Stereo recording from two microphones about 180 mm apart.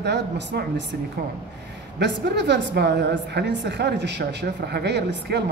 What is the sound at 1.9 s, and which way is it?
A woman's voice, 75° right (ahead or behind).